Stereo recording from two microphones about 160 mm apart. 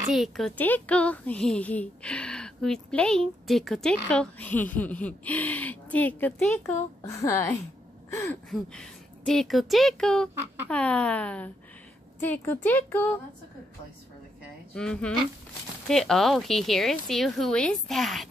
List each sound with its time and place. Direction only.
0.1 s speech: centre (ahead or behind)
0.6 s a woman's voice: 10° left (ahead or behind)
8.1 s a sound: 15° left (ahead or behind)
8.5 s a woman's voice: 5° left (ahead or behind)
14.7 s a woman's voice: 5° left (ahead or behind)